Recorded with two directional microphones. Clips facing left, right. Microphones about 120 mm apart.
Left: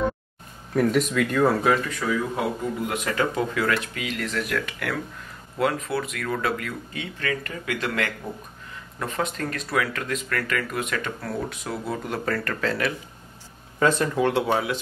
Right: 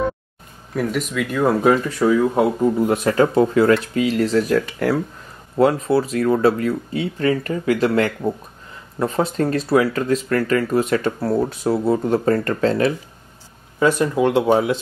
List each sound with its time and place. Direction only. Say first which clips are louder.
0.7 s speech: left 1 dB; centre (ahead or behind)
1.5 s speech: right 6 dB; 25° right (ahead or behind)
13.7 s speech: right 4 dB; 15° right (ahead or behind)